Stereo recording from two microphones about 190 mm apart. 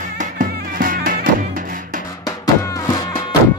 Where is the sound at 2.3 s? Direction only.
20° left (ahead or behind).